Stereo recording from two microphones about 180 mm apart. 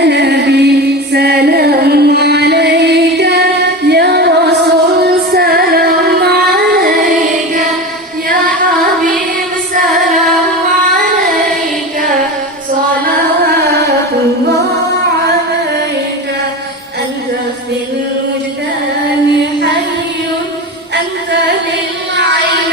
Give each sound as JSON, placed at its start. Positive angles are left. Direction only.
{"t": 0.0, "sound": "music", "side_deg": -70}
{"t": 8.3, "sound": "music", "side_deg": -50}